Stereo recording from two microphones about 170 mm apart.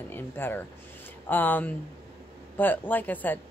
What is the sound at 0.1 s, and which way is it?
A woman's voice, 10° left (ahead or behind).